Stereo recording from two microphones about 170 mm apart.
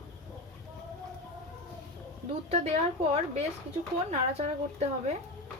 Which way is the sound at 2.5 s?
35° right (ahead or behind).